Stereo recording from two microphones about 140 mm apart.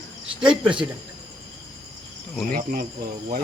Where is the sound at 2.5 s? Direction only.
75° right (ahead or behind).